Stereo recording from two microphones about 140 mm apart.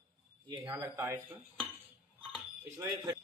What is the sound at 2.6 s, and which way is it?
Speech, 15° right (ahead or behind).